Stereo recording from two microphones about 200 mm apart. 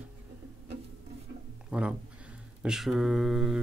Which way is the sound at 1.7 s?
5° right (ahead or behind).